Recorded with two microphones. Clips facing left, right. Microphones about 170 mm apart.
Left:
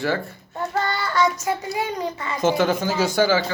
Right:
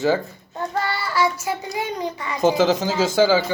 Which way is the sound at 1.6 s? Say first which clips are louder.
Even; 15° right (ahead or behind).